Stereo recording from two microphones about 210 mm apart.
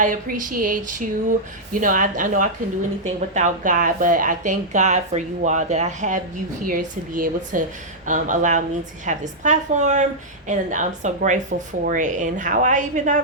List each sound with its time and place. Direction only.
0.0 s a woman's voice: 40° right (ahead or behind)